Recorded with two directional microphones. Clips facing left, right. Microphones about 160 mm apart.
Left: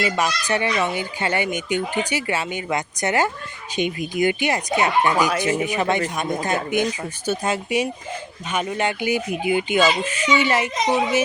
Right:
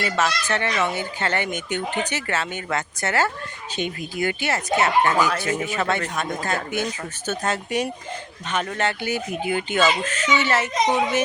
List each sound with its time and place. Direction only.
0.0 s speech: 15° left (ahead or behind)